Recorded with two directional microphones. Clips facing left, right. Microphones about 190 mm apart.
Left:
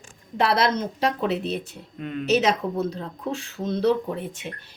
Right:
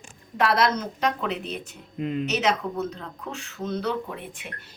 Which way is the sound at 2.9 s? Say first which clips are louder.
Left 6 dB; 35° left (ahead or behind).